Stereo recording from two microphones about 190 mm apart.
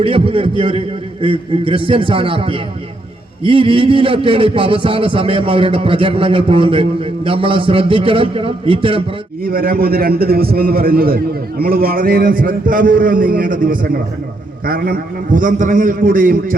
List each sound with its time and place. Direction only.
0.0 s a man's voice: 30° right (ahead or behind)
9.4 s a man's voice: 50° right (ahead or behind)